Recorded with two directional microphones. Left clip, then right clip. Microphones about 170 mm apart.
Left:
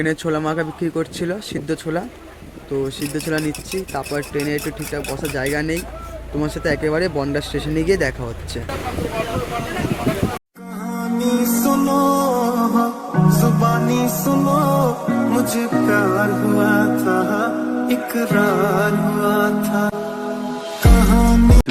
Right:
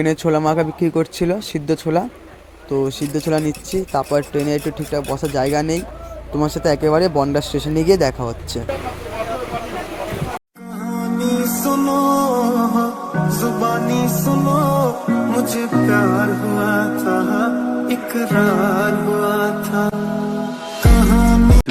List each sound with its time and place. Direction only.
0.0 s speech: 15° right (ahead or behind)
3.2 s speech: 15° right (ahead or behind)
10.8 s music: centre (ahead or behind)